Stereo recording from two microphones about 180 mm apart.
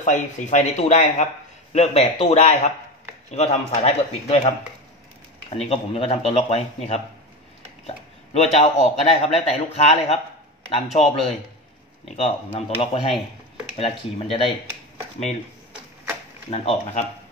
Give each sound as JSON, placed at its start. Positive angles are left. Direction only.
{"t": 0.0, "sound": "a man's voice", "side_deg": 45}
{"t": 5.5, "sound": "a man's voice", "side_deg": 35}
{"t": 12.5, "sound": "a man's voice", "side_deg": 35}
{"t": 16.4, "sound": "a man's voice", "side_deg": 35}